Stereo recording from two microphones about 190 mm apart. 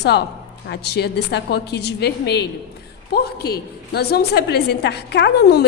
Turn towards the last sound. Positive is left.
turn(degrees=60)  # may be behind; listen again after turning